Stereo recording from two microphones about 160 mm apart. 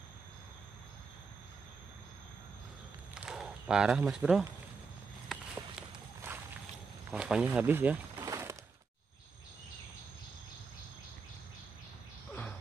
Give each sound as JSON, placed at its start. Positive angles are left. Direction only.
{"t": 3.2, "sound": "walk", "side_deg": -5}
{"t": 7.1, "sound": "speech", "side_deg": -5}
{"t": 8.2, "sound": "a sound", "side_deg": -20}